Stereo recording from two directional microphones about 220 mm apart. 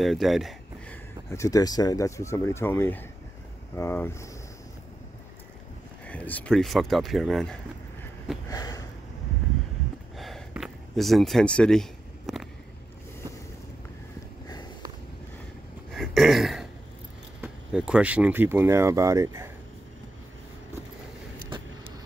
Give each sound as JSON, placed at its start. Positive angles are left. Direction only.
{"t": 0.0, "sound": "speech", "side_deg": 0}
{"t": 1.3, "sound": "speech", "side_deg": 15}
{"t": 6.0, "sound": "speech", "side_deg": 5}
{"t": 8.5, "sound": "sniff", "side_deg": 15}
{"t": 10.1, "sound": "a sound", "side_deg": 0}
{"t": 15.9, "sound": "a sound", "side_deg": 0}
{"t": 17.4, "sound": "speech", "side_deg": -5}